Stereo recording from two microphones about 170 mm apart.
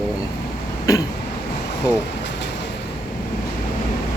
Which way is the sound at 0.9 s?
20° left (ahead or behind).